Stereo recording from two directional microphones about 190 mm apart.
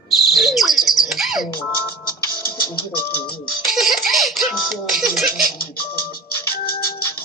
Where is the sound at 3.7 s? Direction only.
Centre (ahead or behind).